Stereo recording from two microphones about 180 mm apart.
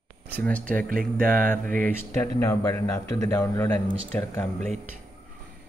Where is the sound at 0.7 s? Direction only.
50° right (ahead or behind).